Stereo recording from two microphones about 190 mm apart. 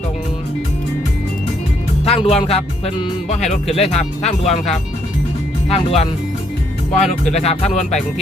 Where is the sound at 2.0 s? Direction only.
35° left (ahead or behind).